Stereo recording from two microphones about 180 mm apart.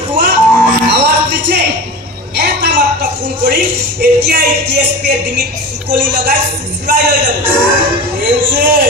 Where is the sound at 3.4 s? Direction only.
65° right (ahead or behind).